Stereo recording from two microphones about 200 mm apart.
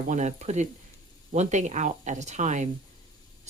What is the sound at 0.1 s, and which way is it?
Speech, 35° right (ahead or behind).